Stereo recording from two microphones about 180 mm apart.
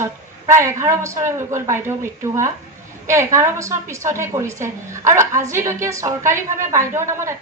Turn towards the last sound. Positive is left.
turn(degrees=-15)  # may be behind; listen again after turning